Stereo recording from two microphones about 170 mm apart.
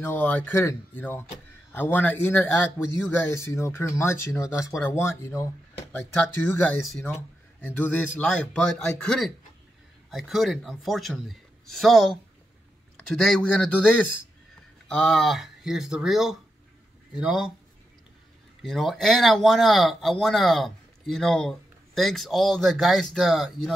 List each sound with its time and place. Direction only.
0.0 s speech: 10° left (ahead or behind)
6.8 s speech: centre (ahead or behind)
7.1 s speech: 10° left (ahead or behind)
15.0 s speech: centre (ahead or behind)
18.6 s speech: centre (ahead or behind)